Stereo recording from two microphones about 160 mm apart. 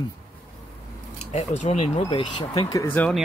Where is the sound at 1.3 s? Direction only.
45° left (ahead or behind).